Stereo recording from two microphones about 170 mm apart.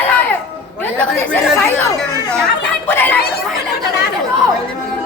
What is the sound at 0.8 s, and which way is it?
Speech, 10° left (ahead or behind).